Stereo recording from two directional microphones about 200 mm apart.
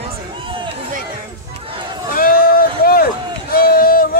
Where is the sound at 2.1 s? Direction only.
45° left (ahead or behind).